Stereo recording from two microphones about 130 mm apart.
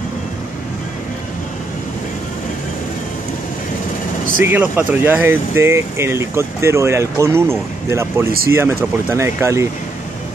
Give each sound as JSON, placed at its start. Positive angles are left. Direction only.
{"t": 4.4, "sound": "speech", "side_deg": -15}